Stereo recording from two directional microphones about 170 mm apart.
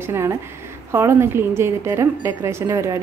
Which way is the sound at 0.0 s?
15° right (ahead or behind).